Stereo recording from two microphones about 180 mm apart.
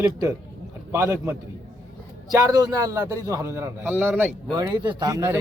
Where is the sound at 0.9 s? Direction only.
15° right (ahead or behind).